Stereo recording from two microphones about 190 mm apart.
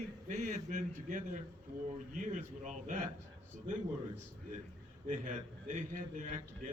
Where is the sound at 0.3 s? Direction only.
40° right (ahead or behind).